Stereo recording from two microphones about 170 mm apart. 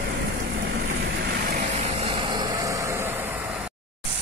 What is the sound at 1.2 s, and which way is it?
Vehicle, 65° right (ahead or behind).